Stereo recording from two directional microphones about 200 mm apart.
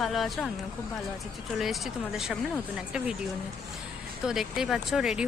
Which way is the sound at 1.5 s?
Centre (ahead or behind).